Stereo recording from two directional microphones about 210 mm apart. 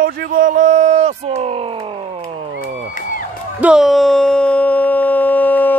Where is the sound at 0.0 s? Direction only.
40° right (ahead or behind).